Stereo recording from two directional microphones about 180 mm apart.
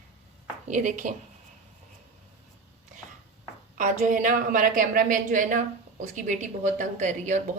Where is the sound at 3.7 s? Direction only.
45° right (ahead or behind).